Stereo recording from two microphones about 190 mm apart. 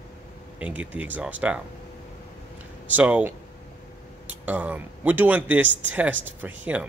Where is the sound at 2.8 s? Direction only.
10° right (ahead or behind).